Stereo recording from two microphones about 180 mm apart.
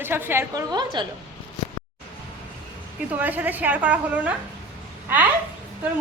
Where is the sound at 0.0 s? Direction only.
10° right (ahead or behind).